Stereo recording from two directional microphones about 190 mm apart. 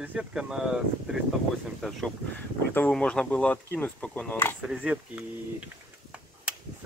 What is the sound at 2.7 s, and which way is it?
Speech, 5° left (ahead or behind).